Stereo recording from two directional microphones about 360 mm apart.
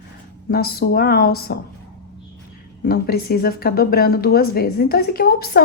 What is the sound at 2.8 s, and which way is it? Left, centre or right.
Speech, left.